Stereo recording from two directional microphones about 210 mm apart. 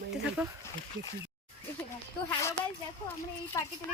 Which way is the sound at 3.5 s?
15° left (ahead or behind).